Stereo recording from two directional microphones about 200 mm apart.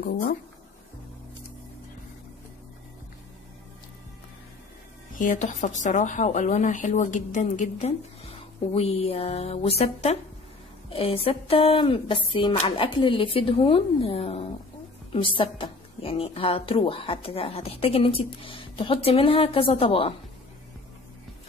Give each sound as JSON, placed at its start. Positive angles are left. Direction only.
{"t": 5.2, "sound": "a woman's voice", "side_deg": 40}